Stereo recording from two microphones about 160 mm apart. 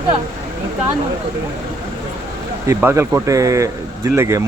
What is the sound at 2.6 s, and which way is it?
Speech, 15° right (ahead or behind).